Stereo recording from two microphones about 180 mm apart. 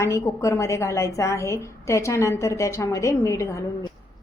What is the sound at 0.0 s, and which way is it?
A woman's voice, 15° left (ahead or behind).